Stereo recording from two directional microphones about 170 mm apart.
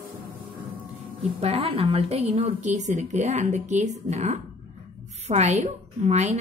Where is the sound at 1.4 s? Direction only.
35° right (ahead or behind).